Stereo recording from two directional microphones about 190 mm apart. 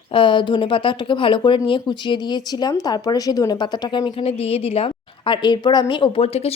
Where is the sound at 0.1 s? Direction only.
25° left (ahead or behind).